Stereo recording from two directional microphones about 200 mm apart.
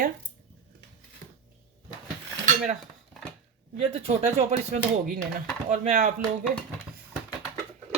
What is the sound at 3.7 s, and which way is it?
Speech, 30° right (ahead or behind).